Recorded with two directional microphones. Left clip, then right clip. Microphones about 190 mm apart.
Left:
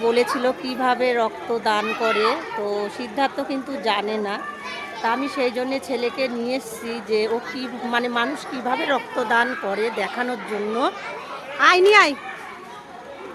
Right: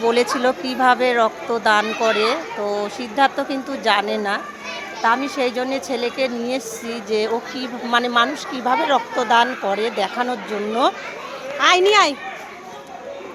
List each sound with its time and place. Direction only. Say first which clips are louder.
0.0 s a woman's voice: right 2 dB; centre (ahead or behind)
11.6 s speech: even; 10° left (ahead or behind)